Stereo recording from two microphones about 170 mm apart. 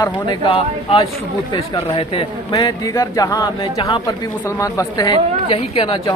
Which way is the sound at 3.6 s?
35° left (ahead or behind).